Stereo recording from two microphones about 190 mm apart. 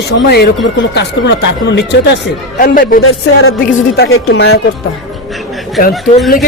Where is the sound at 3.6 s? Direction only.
55° left (ahead or behind).